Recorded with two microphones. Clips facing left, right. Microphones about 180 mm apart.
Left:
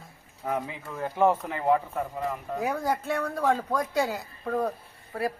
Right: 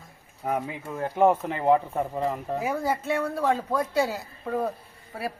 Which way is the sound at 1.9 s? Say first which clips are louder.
Right 4 dB; 30° right (ahead or behind).